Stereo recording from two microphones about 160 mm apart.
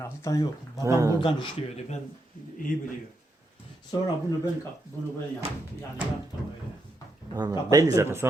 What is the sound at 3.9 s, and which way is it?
Speech, 25° left (ahead or behind).